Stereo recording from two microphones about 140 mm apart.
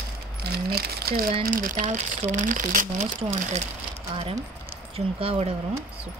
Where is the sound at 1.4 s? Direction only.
75° right (ahead or behind).